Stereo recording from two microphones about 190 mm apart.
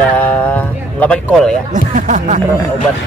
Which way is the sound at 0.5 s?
5° left (ahead or behind).